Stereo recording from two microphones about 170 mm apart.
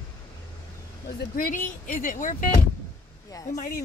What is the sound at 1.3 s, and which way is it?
Speech, 55° left (ahead or behind).